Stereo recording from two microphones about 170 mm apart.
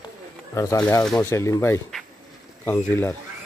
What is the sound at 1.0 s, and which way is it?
Speech, 5° left (ahead or behind).